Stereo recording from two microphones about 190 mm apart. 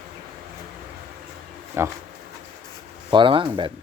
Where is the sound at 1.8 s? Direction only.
10° right (ahead or behind).